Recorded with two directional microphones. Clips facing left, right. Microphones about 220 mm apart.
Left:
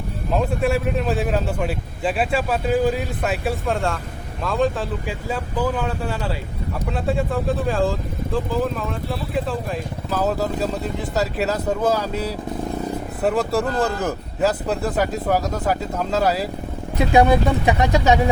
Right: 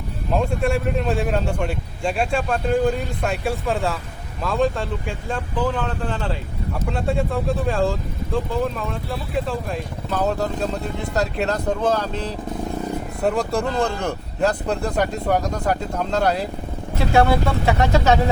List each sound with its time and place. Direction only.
0.3 s a man's voice: centre (ahead or behind)
10.1 s a man's voice: centre (ahead or behind)
17.0 s speech: 15° left (ahead or behind)